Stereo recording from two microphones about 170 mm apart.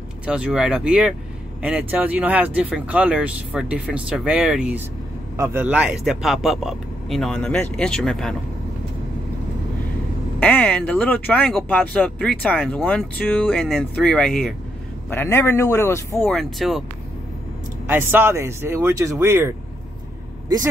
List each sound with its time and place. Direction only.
0.3 s speech: 5° right (ahead or behind)
10.4 s speech: 5° left (ahead or behind)
15.0 s speech: 15° left (ahead or behind)
16.3 s speech: centre (ahead or behind)
17.8 s speech: 10° right (ahead or behind)